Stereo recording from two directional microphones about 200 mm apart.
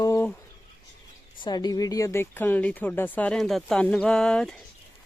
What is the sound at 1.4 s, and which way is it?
Speech, 20° left (ahead or behind).